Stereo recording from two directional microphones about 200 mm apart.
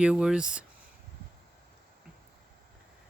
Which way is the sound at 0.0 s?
5° right (ahead or behind).